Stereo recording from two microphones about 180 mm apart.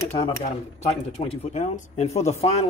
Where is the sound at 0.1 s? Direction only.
35° left (ahead or behind).